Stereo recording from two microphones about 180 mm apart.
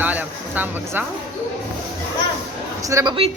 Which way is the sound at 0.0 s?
10° right (ahead or behind).